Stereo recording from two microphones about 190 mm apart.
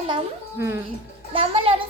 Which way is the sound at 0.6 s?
15° right (ahead or behind).